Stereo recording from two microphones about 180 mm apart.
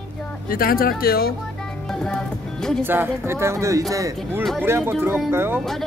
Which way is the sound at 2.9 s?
10° right (ahead or behind).